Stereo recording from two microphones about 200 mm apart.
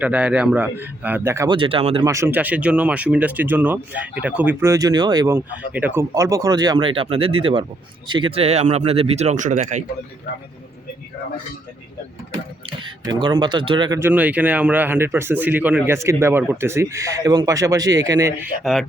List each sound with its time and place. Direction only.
0.0 s speech: 5° right (ahead or behind)
1.5 s speech: 25° right (ahead or behind)
2.0 s speech: 15° right (ahead or behind); by 9.8 s 40° right (ahead or behind)
12.8 s speech: 20° right (ahead or behind)
18.6 s speech: centre (ahead or behind)